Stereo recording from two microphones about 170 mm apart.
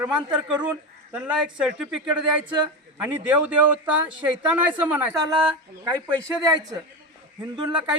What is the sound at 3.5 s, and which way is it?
Speech, 10° right (ahead or behind).